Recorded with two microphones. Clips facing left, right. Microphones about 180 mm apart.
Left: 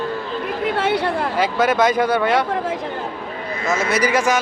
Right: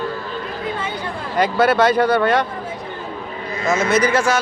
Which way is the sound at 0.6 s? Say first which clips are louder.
Left 9 dB; 75° left (ahead or behind).